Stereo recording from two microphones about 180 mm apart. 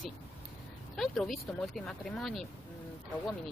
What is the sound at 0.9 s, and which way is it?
Speech, centre (ahead or behind).